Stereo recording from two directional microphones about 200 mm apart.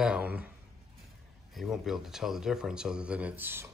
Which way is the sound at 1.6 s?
Centre (ahead or behind).